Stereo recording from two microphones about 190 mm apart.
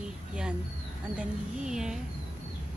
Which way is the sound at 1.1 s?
5° right (ahead or behind).